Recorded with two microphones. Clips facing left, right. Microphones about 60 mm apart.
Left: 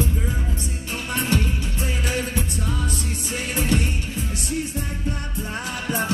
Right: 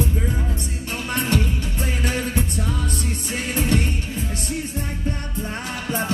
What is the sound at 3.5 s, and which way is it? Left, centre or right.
Music, right.